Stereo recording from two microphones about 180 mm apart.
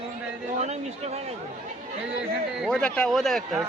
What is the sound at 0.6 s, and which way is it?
Speech, 35° right (ahead or behind).